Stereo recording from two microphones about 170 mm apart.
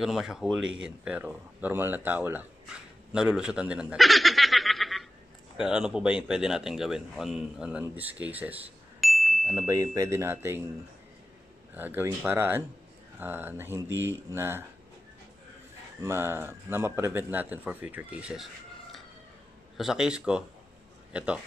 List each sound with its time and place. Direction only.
0.0 s speech: centre (ahead or behind)
9.7 s speech: 20° right (ahead or behind)
11.7 s speech: 10° right (ahead or behind)
16.0 s a man's voice: 15° right (ahead or behind)